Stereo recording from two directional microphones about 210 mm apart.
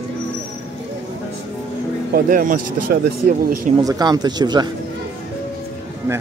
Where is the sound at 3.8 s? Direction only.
15° right (ahead or behind).